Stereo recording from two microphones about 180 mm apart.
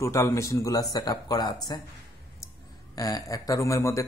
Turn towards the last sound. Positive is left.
turn(degrees=15)  # may be behind; listen again after turning